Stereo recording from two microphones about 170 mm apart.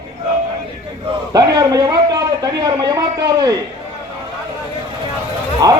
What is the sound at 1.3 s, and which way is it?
A man's voice, 20° right (ahead or behind).